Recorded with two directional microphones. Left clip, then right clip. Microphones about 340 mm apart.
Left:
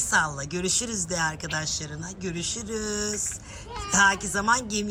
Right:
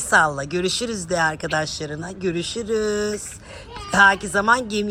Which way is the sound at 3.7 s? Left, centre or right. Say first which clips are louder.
Right 6 dB; centre.